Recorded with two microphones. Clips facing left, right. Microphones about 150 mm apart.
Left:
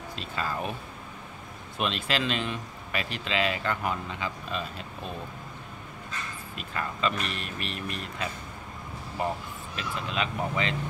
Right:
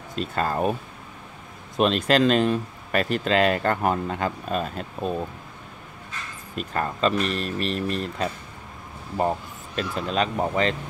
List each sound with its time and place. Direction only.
0.1 s speech: 45° right (ahead or behind)
1.8 s speech: 40° right (ahead or behind)
6.5 s speech: 40° right (ahead or behind)
9.8 s speech: 40° right (ahead or behind)